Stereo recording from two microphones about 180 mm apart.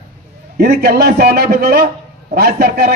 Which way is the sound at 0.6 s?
60° right (ahead or behind).